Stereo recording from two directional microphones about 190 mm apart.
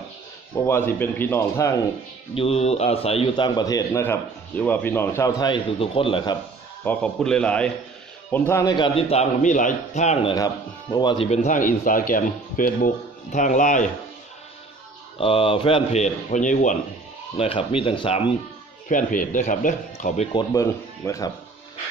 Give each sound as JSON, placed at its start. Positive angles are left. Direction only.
{"t": 0.7, "sound": "a man's voice", "side_deg": 10}
{"t": 2.3, "sound": "a man's voice", "side_deg": 30}
{"t": 6.8, "sound": "a man's voice", "side_deg": 5}
{"t": 10.3, "sound": "a man's voice", "side_deg": 20}
{"t": 11.2, "sound": "speech", "side_deg": 40}
{"t": 15.1, "sound": "a man's voice", "side_deg": 30}
{"t": 17.4, "sound": "a man's voice", "side_deg": 30}
{"t": 18.9, "sound": "speech", "side_deg": 45}
{"t": 20.3, "sound": "a man's voice", "side_deg": 15}